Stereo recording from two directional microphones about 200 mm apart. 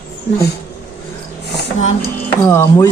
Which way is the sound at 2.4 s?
10° left (ahead or behind).